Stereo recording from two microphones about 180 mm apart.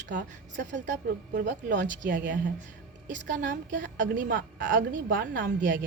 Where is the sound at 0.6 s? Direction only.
80° right.